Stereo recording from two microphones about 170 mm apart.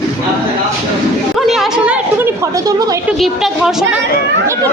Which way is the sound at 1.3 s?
Centre (ahead or behind).